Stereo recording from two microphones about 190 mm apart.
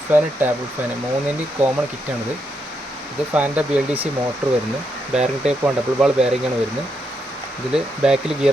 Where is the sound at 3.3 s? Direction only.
5° right (ahead or behind).